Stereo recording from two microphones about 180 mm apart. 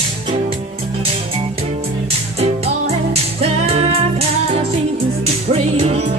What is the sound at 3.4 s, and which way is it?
Music, 35° right (ahead or behind).